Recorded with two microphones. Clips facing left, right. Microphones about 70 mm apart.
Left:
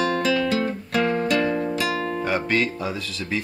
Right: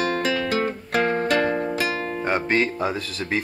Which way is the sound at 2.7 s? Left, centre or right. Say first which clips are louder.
Right 3 dB; right.